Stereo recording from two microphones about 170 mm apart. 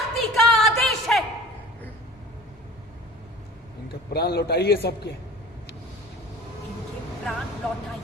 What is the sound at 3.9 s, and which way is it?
A man's voice, 70° left (ahead or behind).